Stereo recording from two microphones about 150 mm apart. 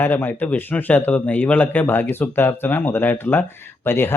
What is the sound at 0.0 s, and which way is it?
Speech, 15° left (ahead or behind).